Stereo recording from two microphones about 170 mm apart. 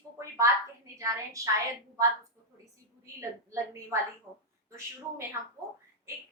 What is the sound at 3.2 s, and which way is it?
Speech, 15° right (ahead or behind).